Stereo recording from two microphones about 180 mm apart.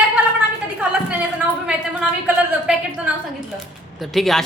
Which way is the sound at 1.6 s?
5° right (ahead or behind).